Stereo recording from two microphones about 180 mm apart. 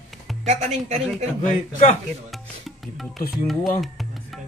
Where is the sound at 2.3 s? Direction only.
Centre (ahead or behind).